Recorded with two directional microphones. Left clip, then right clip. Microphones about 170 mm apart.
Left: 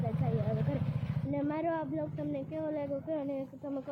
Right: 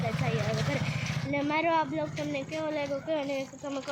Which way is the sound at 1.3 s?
Centre (ahead or behind).